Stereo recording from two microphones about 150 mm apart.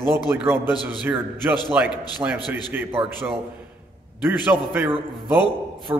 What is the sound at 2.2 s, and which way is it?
Speech, 20° right (ahead or behind).